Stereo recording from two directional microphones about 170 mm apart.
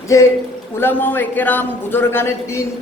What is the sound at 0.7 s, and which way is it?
A man's voice, 10° left (ahead or behind).